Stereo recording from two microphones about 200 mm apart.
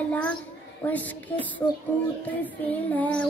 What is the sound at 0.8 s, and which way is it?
Child singing, 10° left (ahead or behind).